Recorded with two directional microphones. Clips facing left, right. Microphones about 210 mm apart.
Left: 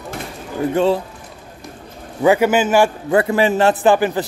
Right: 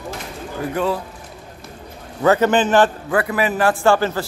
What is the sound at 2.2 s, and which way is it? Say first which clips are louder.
Speech: left 1 dB; 10° left (ahead or behind).